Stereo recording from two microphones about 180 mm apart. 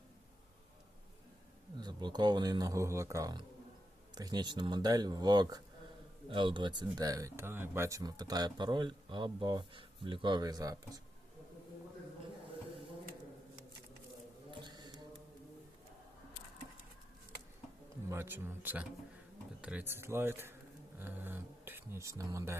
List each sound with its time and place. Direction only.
1.8 s speech: 25° right (ahead or behind)
14.5 s a sound: 25° right (ahead or behind)
18.1 s speech: 10° right (ahead or behind)